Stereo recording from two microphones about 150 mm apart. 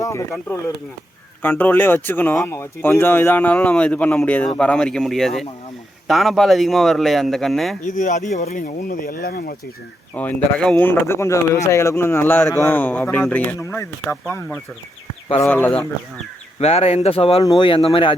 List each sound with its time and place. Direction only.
0.0 s speech: 20° left (ahead or behind)
1.4 s speech: 10° left (ahead or behind)
7.9 s speech: 55° left (ahead or behind)
8.4 s speech: 65° left (ahead or behind)
10.2 s speech: 10° left (ahead or behind)
16.6 s speech: 45° left (ahead or behind)
17.4 s speech: 30° left (ahead or behind)